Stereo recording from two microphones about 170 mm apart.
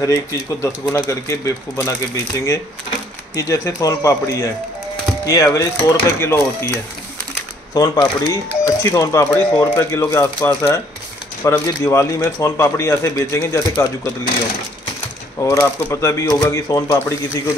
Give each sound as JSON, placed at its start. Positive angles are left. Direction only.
{"t": 0.0, "sound": "speech", "side_deg": 15}
{"t": 15.3, "sound": "speech", "side_deg": 15}